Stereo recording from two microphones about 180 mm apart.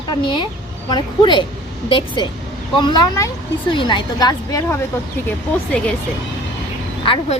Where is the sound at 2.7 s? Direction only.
25° left (ahead or behind).